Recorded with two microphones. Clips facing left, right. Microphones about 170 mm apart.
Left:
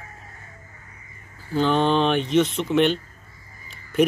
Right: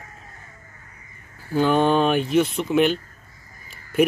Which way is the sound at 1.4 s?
10° right (ahead or behind).